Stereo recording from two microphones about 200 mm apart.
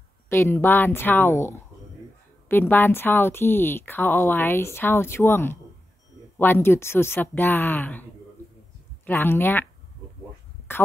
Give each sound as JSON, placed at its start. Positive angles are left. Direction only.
{"t": 0.3, "sound": "a woman's voice", "side_deg": 10}
{"t": 10.7, "sound": "speech", "side_deg": 10}